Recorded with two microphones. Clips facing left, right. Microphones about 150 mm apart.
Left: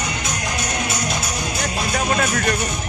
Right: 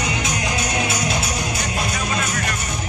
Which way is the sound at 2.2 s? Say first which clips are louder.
Left 4 dB; 45° left (ahead or behind).